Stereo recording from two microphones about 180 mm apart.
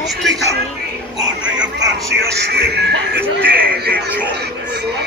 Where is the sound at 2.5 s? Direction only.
65° right (ahead or behind).